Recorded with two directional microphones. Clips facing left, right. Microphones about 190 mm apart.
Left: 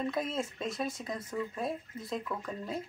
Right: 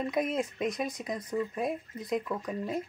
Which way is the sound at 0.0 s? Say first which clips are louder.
Right 3 dB; 15° right (ahead or behind).